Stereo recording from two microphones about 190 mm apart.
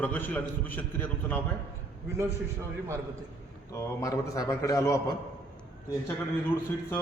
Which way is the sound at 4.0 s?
20° left (ahead or behind).